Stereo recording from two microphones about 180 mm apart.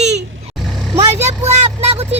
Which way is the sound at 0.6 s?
Centre (ahead or behind).